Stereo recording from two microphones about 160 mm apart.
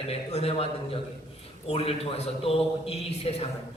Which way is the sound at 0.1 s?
40° left (ahead or behind).